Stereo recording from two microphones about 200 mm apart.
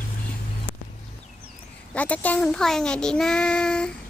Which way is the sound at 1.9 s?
5° left (ahead or behind).